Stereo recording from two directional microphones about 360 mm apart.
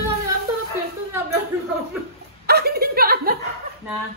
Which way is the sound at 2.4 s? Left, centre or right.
Right.